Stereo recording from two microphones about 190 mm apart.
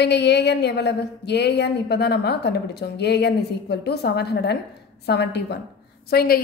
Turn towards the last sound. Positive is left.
turn(degrees=55)  # may be behind; listen again after turning